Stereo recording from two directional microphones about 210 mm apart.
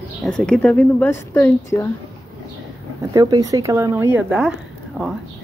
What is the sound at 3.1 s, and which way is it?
Speech, 20° right (ahead or behind).